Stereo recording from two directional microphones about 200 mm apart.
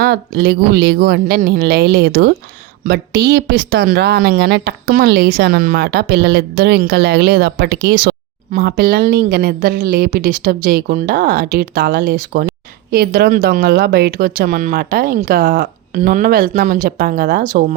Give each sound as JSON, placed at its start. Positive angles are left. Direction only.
{"t": 0.0, "sound": "a woman's voice", "side_deg": -50}